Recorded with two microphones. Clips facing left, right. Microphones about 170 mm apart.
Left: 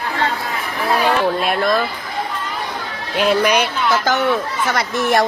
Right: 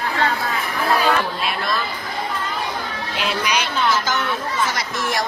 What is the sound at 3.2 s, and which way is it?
Speech, 50° left (ahead or behind).